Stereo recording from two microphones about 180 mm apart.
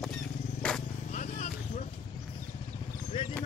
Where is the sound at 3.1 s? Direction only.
30° left (ahead or behind).